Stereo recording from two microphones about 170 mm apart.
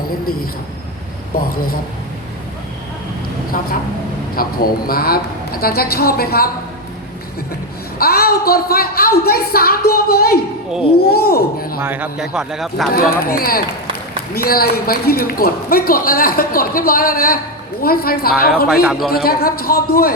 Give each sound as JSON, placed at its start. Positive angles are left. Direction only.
{"t": 1.4, "sound": "a man's voice", "side_deg": 60}
{"t": 4.4, "sound": "a man's voice", "side_deg": 60}
{"t": 7.9, "sound": "a man's voice", "side_deg": 65}
{"t": 11.8, "sound": "speech", "side_deg": -10}
{"t": 12.9, "sound": "a man's voice", "side_deg": 60}
{"t": 18.7, "sound": "speech", "side_deg": 0}
{"t": 19.1, "sound": "a man's voice", "side_deg": 65}